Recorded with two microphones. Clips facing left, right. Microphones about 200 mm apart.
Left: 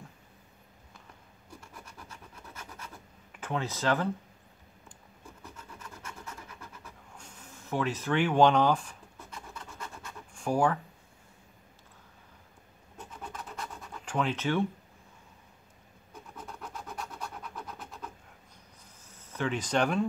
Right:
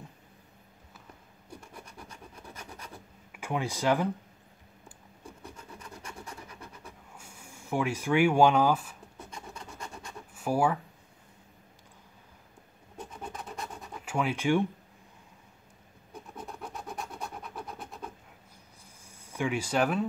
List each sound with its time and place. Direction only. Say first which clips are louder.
3.3 s speech: right 1 dB; 10° right (ahead or behind)
5.4 s filing: even; 30° right (ahead or behind)
7.2 s speech: even; 10° right (ahead or behind)
9.5 s scratch: right 1 dB; 15° right (ahead or behind)
13.2 s scratch: right 1 dB; 15° right (ahead or behind)
16.8 s scratch: right 1 dB; 15° right (ahead or behind)
19.0 s speech: right 1 dB; 10° right (ahead or behind)